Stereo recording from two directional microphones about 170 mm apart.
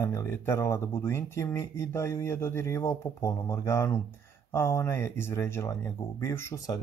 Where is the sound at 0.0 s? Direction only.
15° left (ahead or behind).